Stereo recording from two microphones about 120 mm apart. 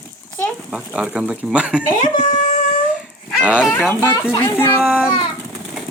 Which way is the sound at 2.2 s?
90° left.